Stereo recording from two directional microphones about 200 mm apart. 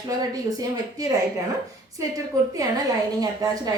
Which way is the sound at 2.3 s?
15° right (ahead or behind).